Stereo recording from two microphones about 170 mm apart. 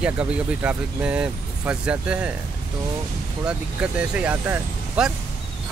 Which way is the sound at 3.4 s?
5° right (ahead or behind).